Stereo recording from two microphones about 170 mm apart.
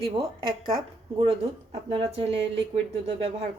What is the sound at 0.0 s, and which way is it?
Speech, 30° right (ahead or behind).